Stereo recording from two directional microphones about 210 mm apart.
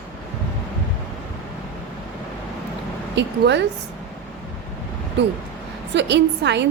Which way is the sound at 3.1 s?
55° right (ahead or behind).